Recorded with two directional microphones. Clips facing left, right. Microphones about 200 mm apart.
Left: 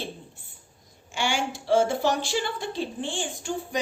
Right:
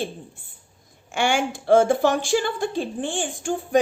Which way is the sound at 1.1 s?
55° right (ahead or behind).